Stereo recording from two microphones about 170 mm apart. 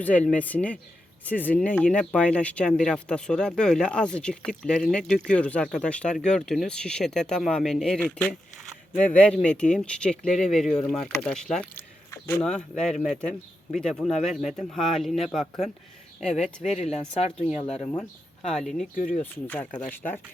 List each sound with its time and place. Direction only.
0.0 s speech: 10° left (ahead or behind)
12.4 s speech: 5° left (ahead or behind)
12.9 s speech: 45° left (ahead or behind)
13.7 s speech: 5° left (ahead or behind)
16.8 s speech: 40° left (ahead or behind)
17.9 s speech: 5° left (ahead or behind)
18.9 s speech: 50° left (ahead or behind)
19.2 s speech: 10° left (ahead or behind)